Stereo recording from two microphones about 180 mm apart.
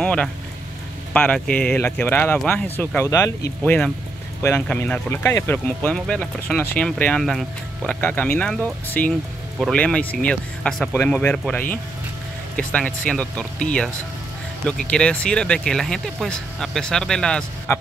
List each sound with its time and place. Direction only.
0.0 s speech: 5° left (ahead or behind)